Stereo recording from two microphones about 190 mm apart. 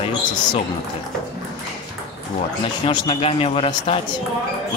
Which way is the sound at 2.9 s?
25° left (ahead or behind).